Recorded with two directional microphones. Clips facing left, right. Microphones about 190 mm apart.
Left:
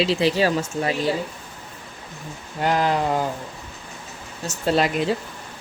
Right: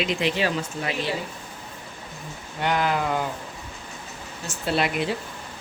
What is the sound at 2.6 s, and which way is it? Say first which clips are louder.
Speech: left 3 dB; 35° left (ahead or behind).